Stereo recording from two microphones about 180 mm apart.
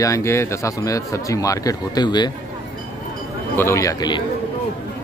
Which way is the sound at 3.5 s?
15° left (ahead or behind).